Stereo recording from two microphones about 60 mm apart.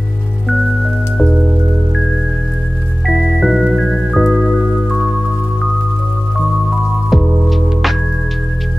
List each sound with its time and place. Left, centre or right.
3.1 s music: centre
7.1 s music: centre